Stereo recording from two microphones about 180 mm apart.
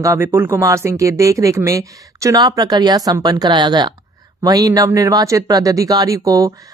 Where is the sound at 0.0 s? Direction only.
15° right (ahead or behind).